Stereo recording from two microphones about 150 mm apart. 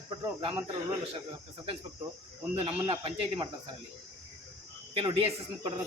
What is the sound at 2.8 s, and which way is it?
Speech, 30° right (ahead or behind).